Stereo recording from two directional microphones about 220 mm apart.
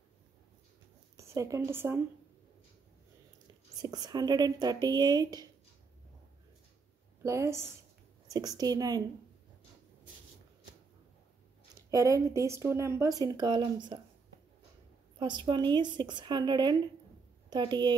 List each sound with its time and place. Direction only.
1.1 s a woman's voice: 15° right (ahead or behind)
3.8 s speech: 20° right (ahead or behind)
7.2 s speech: 10° right (ahead or behind)
11.9 s speech: 15° right (ahead or behind)
15.1 s speech: 20° right (ahead or behind)